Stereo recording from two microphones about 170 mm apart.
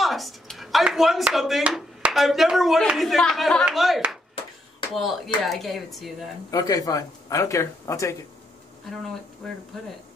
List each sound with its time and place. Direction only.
0.0 s speech: centre (ahead or behind)
6.5 s speech: 20° left (ahead or behind)